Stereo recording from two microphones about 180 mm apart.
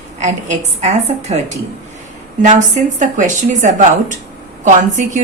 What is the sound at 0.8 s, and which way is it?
Speech, 40° right (ahead or behind).